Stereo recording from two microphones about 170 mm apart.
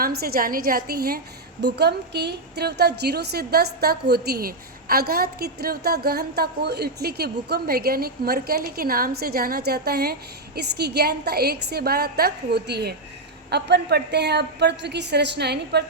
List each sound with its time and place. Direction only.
0.0 s a woman's voice: 60° right (ahead or behind)
1.6 s a woman's voice: 75° right (ahead or behind)